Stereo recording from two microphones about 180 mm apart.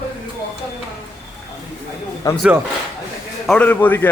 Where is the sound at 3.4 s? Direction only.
5° left (ahead or behind).